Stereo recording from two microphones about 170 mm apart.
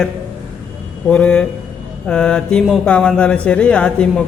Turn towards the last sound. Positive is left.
turn(degrees=5)  # may be behind; listen again after turning